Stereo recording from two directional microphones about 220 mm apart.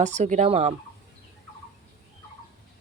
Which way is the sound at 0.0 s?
35° right (ahead or behind).